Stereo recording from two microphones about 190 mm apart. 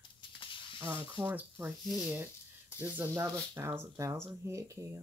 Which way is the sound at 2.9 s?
15° right (ahead or behind).